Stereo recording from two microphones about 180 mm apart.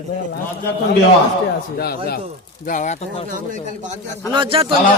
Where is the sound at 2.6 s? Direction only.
45° left (ahead or behind).